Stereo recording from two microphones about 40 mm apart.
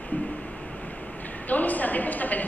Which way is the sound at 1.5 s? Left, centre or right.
Left.